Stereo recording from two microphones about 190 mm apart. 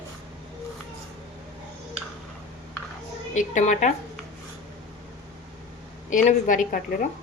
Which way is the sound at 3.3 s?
40° left (ahead or behind).